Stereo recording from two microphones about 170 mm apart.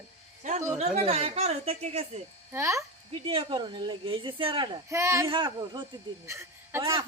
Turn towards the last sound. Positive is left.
turn(degrees=-15)  # may be behind; listen again after turning